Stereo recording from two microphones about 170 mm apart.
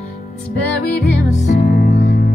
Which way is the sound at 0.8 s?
70° left (ahead or behind).